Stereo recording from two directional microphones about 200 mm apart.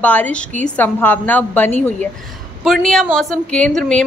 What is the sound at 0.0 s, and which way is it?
A woman's voice, 10° left (ahead or behind).